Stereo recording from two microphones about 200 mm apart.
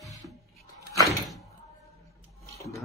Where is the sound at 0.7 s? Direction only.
15° left (ahead or behind).